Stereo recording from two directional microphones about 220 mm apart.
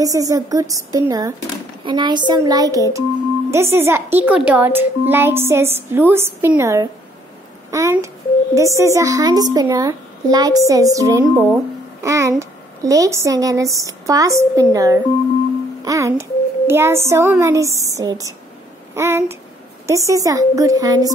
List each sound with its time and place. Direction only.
0.0 s a child's voice: 15° right (ahead or behind)